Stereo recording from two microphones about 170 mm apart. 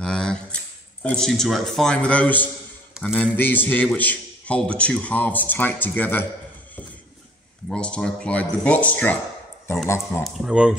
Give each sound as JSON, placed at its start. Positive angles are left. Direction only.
{"t": 0.0, "sound": "a sound", "side_deg": 5}
{"t": 1.0, "sound": "a man's voice", "side_deg": 5}
{"t": 7.7, "sound": "a man's voice", "side_deg": 5}
{"t": 10.2, "sound": "a man's voice", "side_deg": -5}